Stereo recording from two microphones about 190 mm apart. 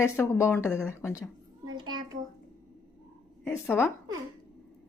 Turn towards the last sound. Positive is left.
turn(degrees=15)  # may be behind; listen again after turning